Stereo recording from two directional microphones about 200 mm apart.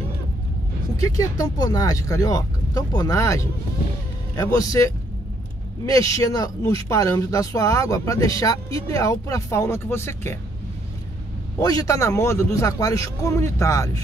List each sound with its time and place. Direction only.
1.0 s speech: 15° left (ahead or behind)
11.6 s speech: 15° left (ahead or behind)